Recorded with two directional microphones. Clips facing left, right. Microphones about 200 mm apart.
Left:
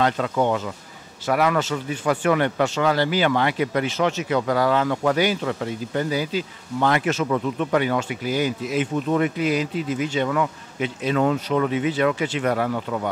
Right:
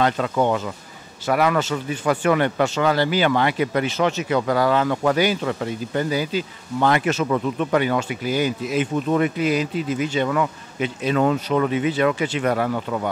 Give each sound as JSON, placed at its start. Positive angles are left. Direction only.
{"t": 0.4, "sound": "speech", "side_deg": -25}
{"t": 7.2, "sound": "speech", "side_deg": -25}
{"t": 7.8, "sound": "speech", "side_deg": -10}